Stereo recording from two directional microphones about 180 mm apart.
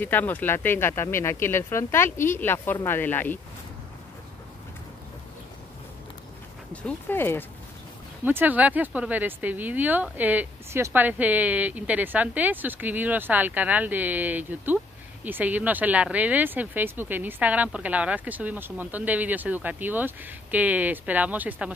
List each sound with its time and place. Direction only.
0.0 s speech: 10° left (ahead or behind)
6.7 s speech: 10° left (ahead or behind)
8.3 s speech: 10° right (ahead or behind)